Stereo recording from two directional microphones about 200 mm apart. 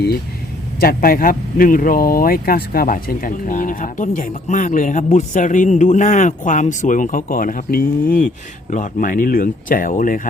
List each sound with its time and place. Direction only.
0.8 s speech: 45° left (ahead or behind)